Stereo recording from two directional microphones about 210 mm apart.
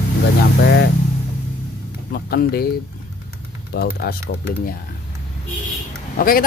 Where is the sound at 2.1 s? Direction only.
50° left (ahead or behind).